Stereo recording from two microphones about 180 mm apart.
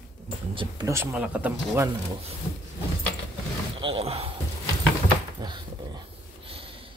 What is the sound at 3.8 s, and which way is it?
Speech, 30° right (ahead or behind).